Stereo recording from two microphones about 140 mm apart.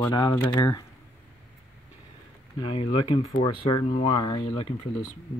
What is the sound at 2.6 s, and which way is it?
Speech, 40° left (ahead or behind).